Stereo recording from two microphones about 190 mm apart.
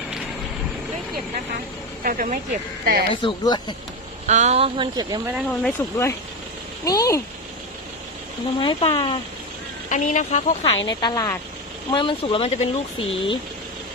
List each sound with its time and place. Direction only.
2.0 s speech: 45° right (ahead or behind)
3.1 s speech: 25° left (ahead or behind)
4.3 s speech: 35° right (ahead or behind); by 5.3 s 20° right (ahead or behind)
5.5 s speech: 10° left (ahead or behind)
8.5 s speech: 25° left (ahead or behind)
9.9 s speech: 40° left (ahead or behind)
10.8 s speech: 20° left (ahead or behind)